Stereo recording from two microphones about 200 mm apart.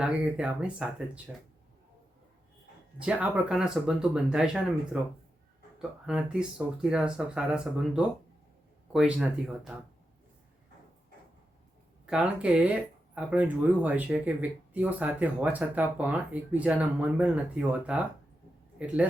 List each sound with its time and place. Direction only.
0.0 s speech: 5° right (ahead or behind)
3.0 s speech: 5° right (ahead or behind)
12.0 s speech: 5° right (ahead or behind)